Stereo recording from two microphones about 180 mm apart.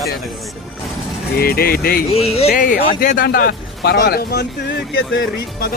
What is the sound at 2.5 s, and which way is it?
Speech, 50° left (ahead or behind).